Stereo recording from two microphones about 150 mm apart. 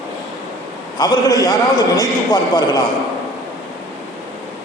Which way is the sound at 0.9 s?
25° left (ahead or behind).